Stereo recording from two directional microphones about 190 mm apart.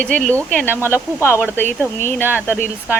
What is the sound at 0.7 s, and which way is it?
Speech, 10° right (ahead or behind).